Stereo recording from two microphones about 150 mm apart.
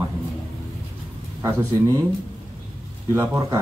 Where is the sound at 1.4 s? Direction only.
20° right (ahead or behind).